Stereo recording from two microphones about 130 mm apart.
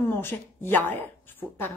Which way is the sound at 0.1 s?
15° left (ahead or behind).